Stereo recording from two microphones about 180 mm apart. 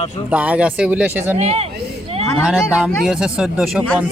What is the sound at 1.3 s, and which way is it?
Speech, 35° right (ahead or behind).